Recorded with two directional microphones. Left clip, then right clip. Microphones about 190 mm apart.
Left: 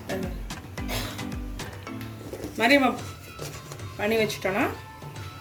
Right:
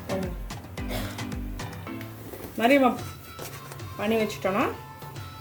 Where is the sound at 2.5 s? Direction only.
40° right (ahead or behind).